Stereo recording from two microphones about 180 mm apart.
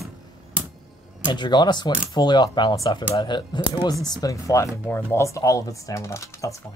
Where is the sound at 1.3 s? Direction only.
25° left (ahead or behind).